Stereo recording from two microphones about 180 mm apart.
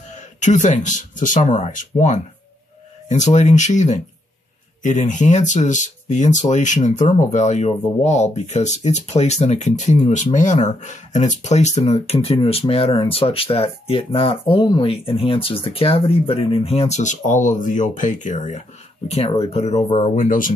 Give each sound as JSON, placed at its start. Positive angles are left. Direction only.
{"t": 0.1, "sound": "speech", "side_deg": 40}